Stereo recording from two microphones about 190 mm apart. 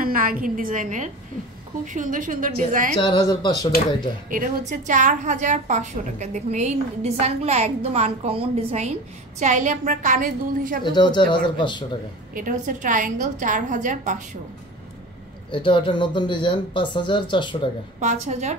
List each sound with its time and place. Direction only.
0.0 s a woman's voice: 50° right (ahead or behind)
3.0 s speech: 25° left (ahead or behind)
4.3 s a woman's voice: 45° right (ahead or behind)
10.8 s speech: 25° left (ahead or behind)
12.4 s a woman's voice: 45° right (ahead or behind)
15.5 s speech: 25° left (ahead or behind)
18.0 s a woman's voice: 35° right (ahead or behind)